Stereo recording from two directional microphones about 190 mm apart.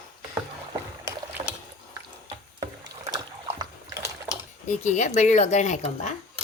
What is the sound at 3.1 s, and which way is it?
Splash, 20° right (ahead or behind).